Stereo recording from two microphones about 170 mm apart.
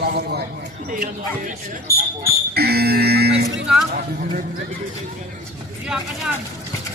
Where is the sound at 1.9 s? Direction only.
65° right (ahead or behind).